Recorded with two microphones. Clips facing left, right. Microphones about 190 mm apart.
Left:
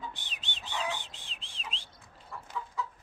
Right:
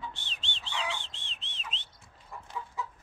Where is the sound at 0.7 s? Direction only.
40° left (ahead or behind).